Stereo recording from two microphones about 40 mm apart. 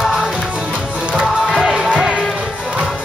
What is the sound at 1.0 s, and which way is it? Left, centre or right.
Music, right.